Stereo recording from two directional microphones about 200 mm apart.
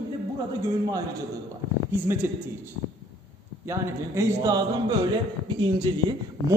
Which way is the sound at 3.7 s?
15° right (ahead or behind).